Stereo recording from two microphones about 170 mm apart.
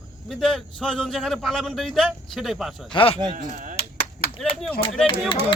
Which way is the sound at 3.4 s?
50° right (ahead or behind).